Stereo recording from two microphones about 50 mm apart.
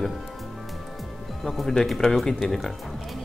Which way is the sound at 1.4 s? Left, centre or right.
Centre.